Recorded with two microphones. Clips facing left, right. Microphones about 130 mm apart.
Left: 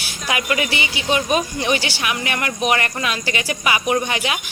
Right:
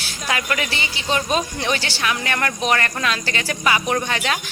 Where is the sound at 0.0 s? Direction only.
15° left (ahead or behind).